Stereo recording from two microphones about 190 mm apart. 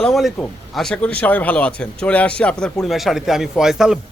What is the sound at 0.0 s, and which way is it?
Speech, centre (ahead or behind).